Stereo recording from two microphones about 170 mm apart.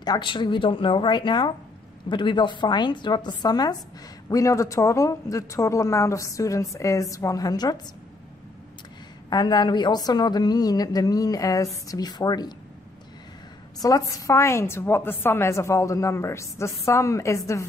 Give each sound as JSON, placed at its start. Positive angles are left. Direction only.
{"t": 0.0, "sound": "speech", "side_deg": 25}
{"t": 9.3, "sound": "speech", "side_deg": 25}
{"t": 13.7, "sound": "a woman's voice", "side_deg": 20}